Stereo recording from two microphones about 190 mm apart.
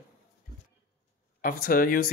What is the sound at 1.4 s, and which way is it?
Speech, 50° left (ahead or behind).